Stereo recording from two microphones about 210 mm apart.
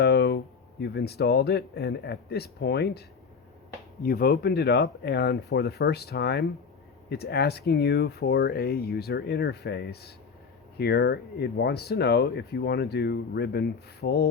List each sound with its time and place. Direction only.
0.0 s speech: 50° left (ahead or behind)
4.0 s speech: 45° left (ahead or behind)